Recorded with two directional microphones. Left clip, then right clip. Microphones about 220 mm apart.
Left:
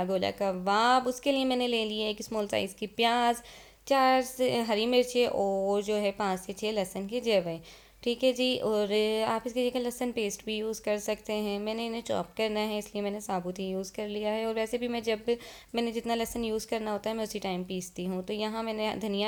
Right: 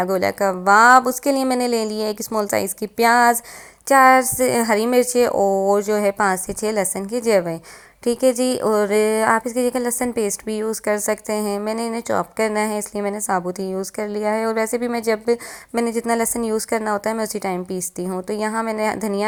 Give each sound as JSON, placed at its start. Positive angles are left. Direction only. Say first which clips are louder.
{"t": 0.0, "sound": "a woman's voice", "louder": "right 10 dB", "side_deg": -15}
{"t": 5.3, "sound": "speech", "louder": "right 11 dB", "side_deg": -30}
{"t": 5.7, "sound": "a woman's voice", "louder": "right 11 dB", "side_deg": -15}